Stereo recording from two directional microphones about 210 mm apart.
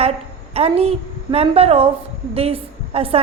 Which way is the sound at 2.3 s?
30° right (ahead or behind).